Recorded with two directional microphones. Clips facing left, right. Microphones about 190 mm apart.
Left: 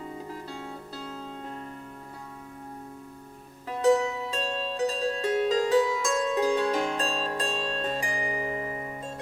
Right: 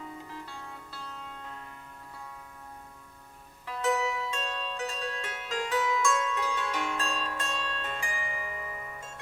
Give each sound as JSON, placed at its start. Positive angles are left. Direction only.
{"t": 0.3, "sound": "music", "side_deg": 40}
{"t": 3.7, "sound": "harp", "side_deg": 35}